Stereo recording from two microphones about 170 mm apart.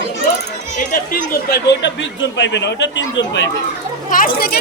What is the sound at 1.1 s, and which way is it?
Speech, 60° left (ahead or behind).